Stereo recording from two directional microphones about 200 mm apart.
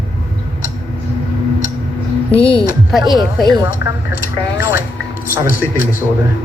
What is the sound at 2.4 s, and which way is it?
Speech, 25° left (ahead or behind).